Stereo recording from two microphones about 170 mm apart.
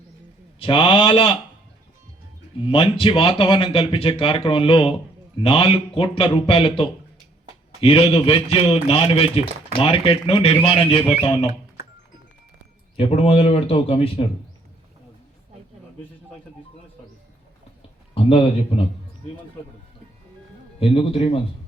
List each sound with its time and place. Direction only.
0.6 s a man's voice: 30° left (ahead or behind)
2.6 s a man's voice: 30° left (ahead or behind)
13.0 s a man's voice: 35° left (ahead or behind)
18.1 s speech: 35° left (ahead or behind)
20.7 s a man's voice: 35° left (ahead or behind)